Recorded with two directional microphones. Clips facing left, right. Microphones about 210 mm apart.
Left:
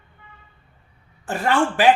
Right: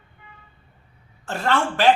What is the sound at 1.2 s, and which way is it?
Speech, 15° left (ahead or behind).